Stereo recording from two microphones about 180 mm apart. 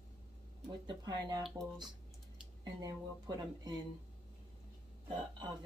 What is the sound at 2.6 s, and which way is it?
A woman's voice, 20° right (ahead or behind).